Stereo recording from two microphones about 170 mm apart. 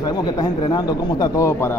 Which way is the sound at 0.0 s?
25° left (ahead or behind).